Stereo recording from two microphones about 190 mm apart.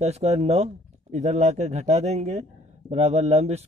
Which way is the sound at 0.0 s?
35° right (ahead or behind).